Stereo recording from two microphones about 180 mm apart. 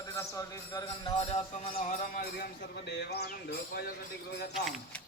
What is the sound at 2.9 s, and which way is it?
Speech, 65° left (ahead or behind).